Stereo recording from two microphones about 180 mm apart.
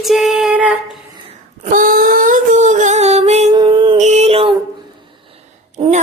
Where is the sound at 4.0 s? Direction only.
40° right (ahead or behind).